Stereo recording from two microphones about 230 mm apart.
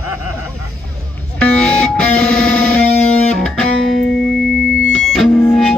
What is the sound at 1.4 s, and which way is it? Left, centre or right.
Music, centre.